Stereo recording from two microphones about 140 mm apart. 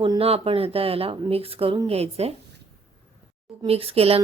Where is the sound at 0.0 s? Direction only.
40° right (ahead or behind).